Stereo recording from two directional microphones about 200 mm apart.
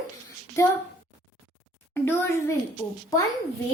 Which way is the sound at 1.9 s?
10° left (ahead or behind).